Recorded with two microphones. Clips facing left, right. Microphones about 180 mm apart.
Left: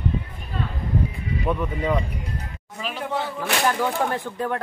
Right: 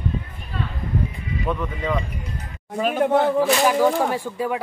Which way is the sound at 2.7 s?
50° right (ahead or behind).